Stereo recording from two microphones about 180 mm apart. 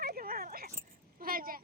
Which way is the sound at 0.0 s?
55° right (ahead or behind).